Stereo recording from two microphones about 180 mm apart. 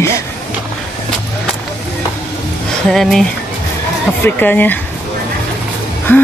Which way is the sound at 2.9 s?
Centre (ahead or behind).